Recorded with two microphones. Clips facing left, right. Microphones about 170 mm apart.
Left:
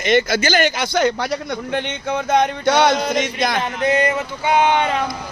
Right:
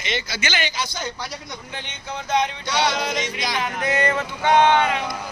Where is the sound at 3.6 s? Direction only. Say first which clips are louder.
Left 3 dB; 20° left (ahead or behind).